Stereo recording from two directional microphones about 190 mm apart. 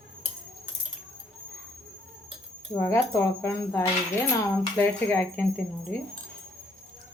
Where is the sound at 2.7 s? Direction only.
15° left (ahead or behind).